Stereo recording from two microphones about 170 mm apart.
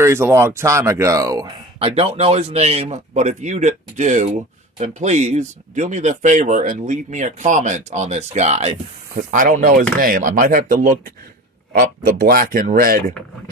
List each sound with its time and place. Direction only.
0.0 s speech: 15° right (ahead or behind)
1.8 s speech: 35° right (ahead or behind)
9.1 s speech: 50° right (ahead or behind)